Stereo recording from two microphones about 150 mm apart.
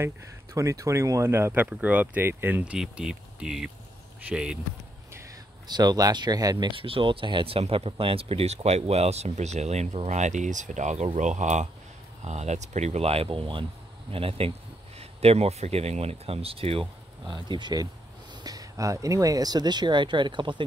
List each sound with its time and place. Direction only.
0.6 s speech: 20° right (ahead or behind); by 4.6 s 5° right (ahead or behind)
5.1 s speech: 25° right (ahead or behind)